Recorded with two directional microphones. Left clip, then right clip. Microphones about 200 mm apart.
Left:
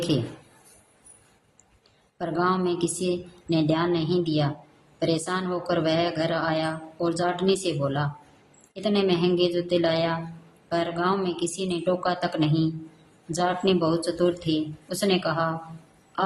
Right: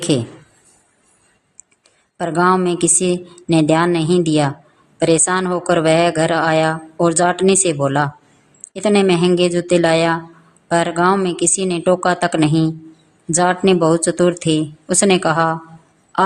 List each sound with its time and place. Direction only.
2.1 s speech: 35° right (ahead or behind)